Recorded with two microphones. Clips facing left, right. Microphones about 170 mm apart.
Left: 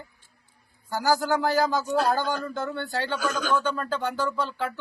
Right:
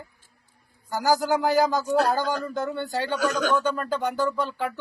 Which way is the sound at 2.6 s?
15° right (ahead or behind).